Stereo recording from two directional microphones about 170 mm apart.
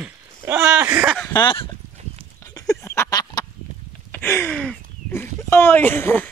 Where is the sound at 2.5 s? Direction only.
20° left (ahead or behind).